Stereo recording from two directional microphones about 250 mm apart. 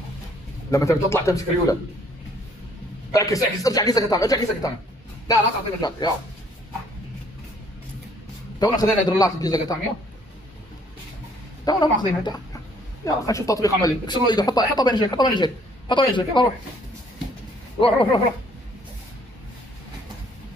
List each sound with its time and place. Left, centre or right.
0.7 s a man's voice: centre
3.1 s a man's voice: centre
8.5 s a man's voice: centre
11.6 s a man's voice: centre
17.7 s speech: left